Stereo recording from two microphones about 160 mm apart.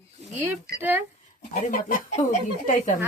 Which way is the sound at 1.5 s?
50° left (ahead or behind).